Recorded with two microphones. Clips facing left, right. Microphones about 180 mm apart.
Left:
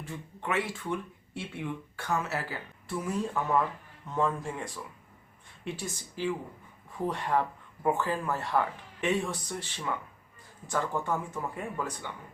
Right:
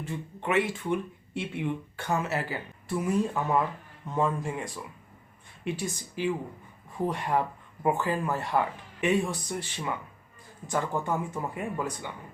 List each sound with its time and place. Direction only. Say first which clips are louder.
0.0 s speech: right 4 dB; 20° right (ahead or behind)